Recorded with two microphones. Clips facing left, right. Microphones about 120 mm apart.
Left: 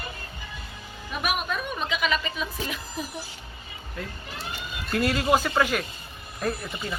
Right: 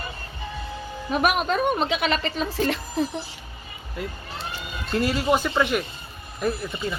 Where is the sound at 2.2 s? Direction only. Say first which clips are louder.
Right 7 dB; 45° right (ahead or behind).